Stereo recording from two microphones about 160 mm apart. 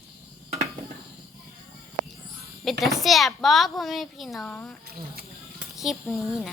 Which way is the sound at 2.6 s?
Centre (ahead or behind).